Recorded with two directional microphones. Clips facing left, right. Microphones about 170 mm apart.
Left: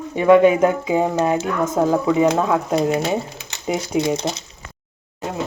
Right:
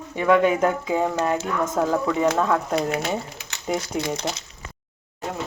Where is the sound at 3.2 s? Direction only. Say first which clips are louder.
Left 3 dB; 25° left (ahead or behind).